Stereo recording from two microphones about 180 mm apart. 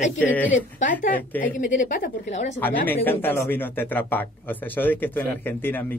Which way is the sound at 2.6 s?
10° left (ahead or behind).